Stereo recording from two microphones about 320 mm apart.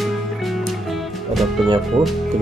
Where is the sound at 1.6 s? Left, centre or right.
Centre.